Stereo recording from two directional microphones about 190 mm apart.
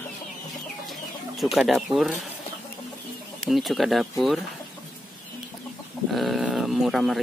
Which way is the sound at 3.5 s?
Centre (ahead or behind).